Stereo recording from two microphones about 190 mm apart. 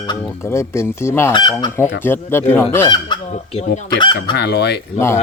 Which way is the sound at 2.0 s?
10° left (ahead or behind).